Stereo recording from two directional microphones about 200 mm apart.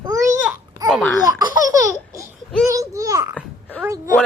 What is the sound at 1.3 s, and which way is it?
Laughter, 20° right (ahead or behind).